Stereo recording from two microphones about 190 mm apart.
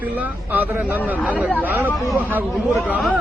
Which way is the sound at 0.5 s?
10° right (ahead or behind).